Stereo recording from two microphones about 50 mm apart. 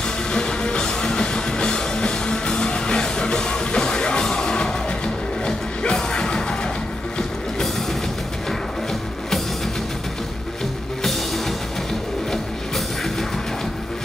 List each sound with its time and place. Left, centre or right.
0.3 s music: centre
11.1 s music: centre